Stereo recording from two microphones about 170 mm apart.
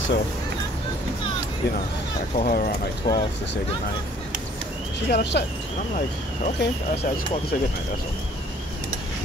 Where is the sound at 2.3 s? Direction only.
55° left (ahead or behind).